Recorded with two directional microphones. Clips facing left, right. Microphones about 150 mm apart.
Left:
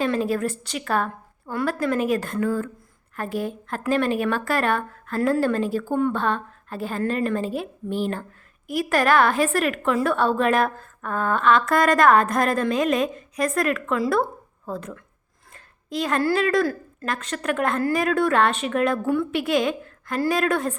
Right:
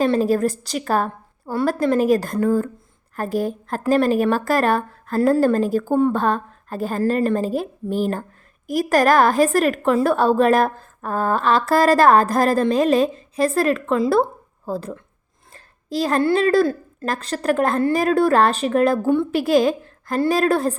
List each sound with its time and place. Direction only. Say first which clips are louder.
0.0 s speech: right 5 dB; 40° right (ahead or behind)